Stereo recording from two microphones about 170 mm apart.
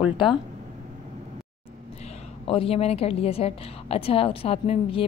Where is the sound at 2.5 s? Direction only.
35° left (ahead or behind).